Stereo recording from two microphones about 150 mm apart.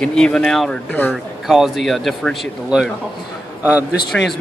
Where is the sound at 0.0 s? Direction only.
5° left (ahead or behind).